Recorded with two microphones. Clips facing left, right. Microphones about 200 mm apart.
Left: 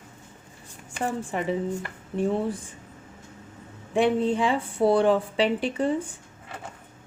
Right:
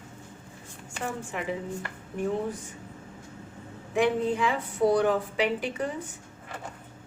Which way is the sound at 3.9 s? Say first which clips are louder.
Left 3 dB; 30° left (ahead or behind).